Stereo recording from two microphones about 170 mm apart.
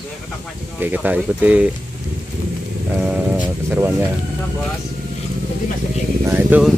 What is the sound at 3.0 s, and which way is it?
Speech, 5° right (ahead or behind).